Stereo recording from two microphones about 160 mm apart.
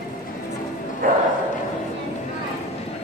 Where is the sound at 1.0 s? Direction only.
55° right (ahead or behind).